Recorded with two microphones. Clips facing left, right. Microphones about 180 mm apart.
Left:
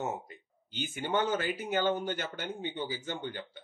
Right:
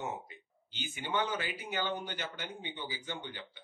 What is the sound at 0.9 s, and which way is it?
Speech, 45° left (ahead or behind).